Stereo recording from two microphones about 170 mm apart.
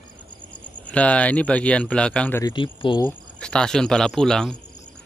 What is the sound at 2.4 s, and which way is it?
Speech, 30° left (ahead or behind).